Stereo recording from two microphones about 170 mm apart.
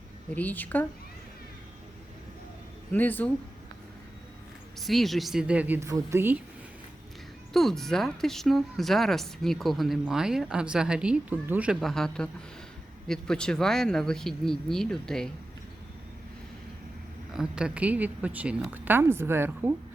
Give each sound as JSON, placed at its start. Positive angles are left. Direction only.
{"t": 0.3, "sound": "a woman's voice", "side_deg": 10}
{"t": 2.9, "sound": "a woman's voice", "side_deg": 10}
{"t": 4.8, "sound": "a woman's voice", "side_deg": 0}
{"t": 7.5, "sound": "speech", "side_deg": 0}
{"t": 17.3, "sound": "a woman's voice", "side_deg": -5}